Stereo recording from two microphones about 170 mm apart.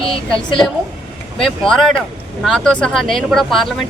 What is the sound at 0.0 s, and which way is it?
Speech, 30° left (ahead or behind).